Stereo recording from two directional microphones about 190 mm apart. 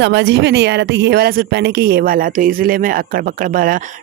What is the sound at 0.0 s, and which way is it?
Speech, 70° right (ahead or behind).